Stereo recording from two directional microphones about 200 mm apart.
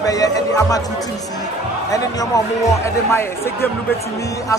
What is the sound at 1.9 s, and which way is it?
A man's voice, 15° left (ahead or behind).